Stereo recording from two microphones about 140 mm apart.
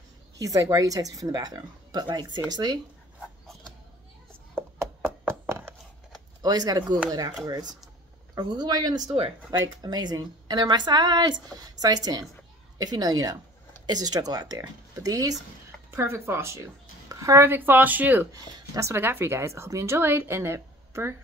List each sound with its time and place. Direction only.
0.4 s a woman's voice: 25° right (ahead or behind)
4.6 s chopping: 15° right (ahead or behind)
6.4 s a woman's voice: 30° right (ahead or behind)
9.0 s speech: 45° right (ahead or behind)
9.5 s a woman's voice: 30° right (ahead or behind)